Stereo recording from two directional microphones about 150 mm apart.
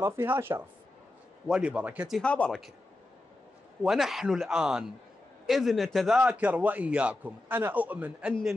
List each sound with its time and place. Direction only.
0.0 s a man's voice: 20° right (ahead or behind)
2.2 s speech: 5° left (ahead or behind)
3.8 s a man's voice: centre (ahead or behind)